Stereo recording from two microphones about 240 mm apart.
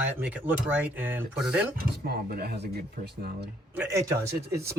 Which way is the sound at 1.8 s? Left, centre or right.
Right.